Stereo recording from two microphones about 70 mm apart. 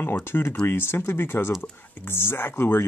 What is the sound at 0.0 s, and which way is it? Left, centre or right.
Speech, left.